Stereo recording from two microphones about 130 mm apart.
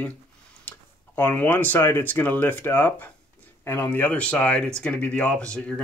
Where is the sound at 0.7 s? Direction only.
15° left (ahead or behind).